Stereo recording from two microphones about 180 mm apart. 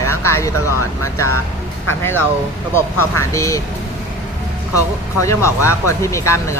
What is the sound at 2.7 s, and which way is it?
Speech, 15° left (ahead or behind).